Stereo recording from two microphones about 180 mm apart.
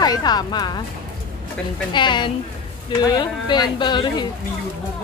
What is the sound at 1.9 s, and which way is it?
Speech, 25° left (ahead or behind).